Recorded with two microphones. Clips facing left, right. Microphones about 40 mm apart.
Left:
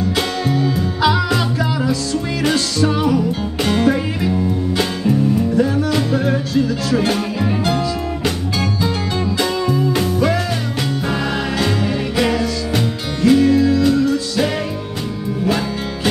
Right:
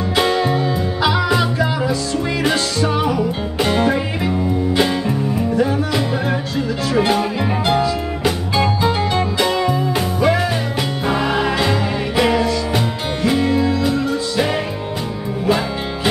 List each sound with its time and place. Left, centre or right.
0.0 s music: centre
1.0 s music: centre
9.4 s music: centre